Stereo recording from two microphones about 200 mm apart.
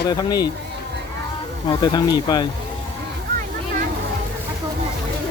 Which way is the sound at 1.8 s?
20° left (ahead or behind).